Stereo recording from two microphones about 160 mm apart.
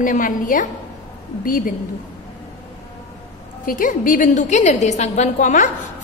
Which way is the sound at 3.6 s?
55° left (ahead or behind).